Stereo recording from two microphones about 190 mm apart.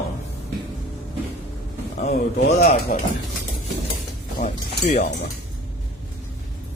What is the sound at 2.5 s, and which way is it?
Speech, 35° left (ahead or behind).